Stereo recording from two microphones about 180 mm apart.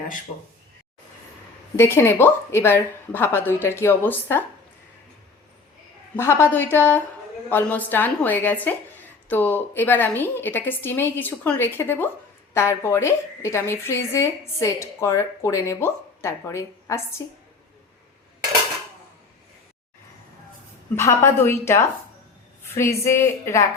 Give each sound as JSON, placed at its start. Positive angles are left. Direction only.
{"t": 1.7, "sound": "speech", "side_deg": 15}
{"t": 6.1, "sound": "speech", "side_deg": 15}
{"t": 20.9, "sound": "speech", "side_deg": 15}